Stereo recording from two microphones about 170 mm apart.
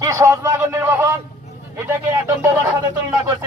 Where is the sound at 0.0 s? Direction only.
20° right (ahead or behind).